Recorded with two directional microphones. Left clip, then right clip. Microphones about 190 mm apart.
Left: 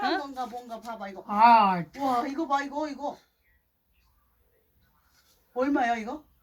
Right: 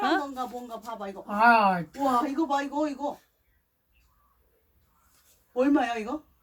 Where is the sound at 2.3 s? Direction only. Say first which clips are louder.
Right 1 dB; 30° right (ahead or behind).